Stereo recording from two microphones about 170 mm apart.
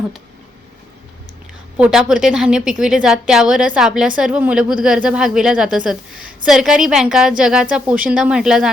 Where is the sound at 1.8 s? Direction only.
5° right (ahead or behind).